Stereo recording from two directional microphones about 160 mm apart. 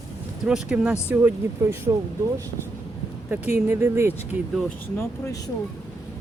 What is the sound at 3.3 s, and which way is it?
Speech, 15° right (ahead or behind).